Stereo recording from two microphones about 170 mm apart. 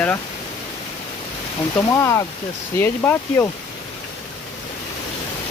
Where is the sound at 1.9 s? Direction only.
15° left (ahead or behind).